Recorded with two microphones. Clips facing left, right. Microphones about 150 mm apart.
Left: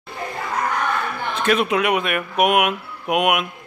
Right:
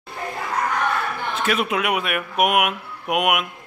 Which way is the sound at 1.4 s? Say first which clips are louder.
Left 4 dB; centre (ahead or behind).